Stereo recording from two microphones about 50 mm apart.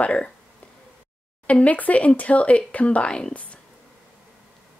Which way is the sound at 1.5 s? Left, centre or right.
Left.